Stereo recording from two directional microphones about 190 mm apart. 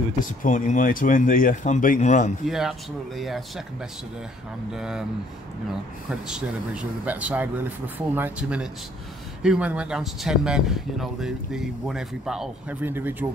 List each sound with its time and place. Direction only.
0.2 s speech: 45° left (ahead or behind)
2.4 s speech: centre (ahead or behind)
4.7 s speech: 5° right (ahead or behind)
6.0 s speech: 5° right (ahead or behind)